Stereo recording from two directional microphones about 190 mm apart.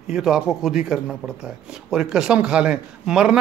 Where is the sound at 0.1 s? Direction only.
Centre (ahead or behind).